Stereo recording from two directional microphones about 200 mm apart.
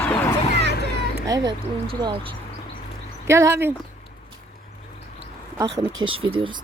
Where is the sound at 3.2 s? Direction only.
15° right (ahead or behind).